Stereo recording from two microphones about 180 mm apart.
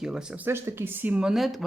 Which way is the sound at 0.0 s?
5° right (ahead or behind).